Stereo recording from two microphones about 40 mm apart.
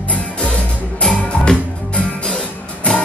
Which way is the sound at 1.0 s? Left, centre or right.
Centre.